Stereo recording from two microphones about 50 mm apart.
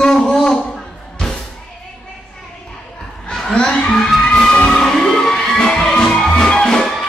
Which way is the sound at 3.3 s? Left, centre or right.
Centre.